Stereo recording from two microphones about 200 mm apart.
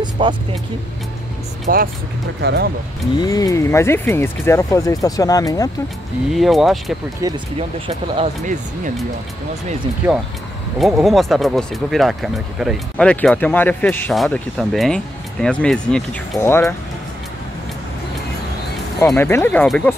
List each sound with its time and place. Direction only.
0.0 s vehicle: 25° right (ahead or behind)
1.7 s speech: 45° right (ahead or behind)
3.2 s speech: 20° left (ahead or behind)
6.3 s speech: centre (ahead or behind)
7.2 s speech: 20° right (ahead or behind)
7.5 s speech: 30° right (ahead or behind)
10.0 s speech: 10° right (ahead or behind); by 16.7 s 15° left (ahead or behind)
19.0 s speech: 10° left (ahead or behind)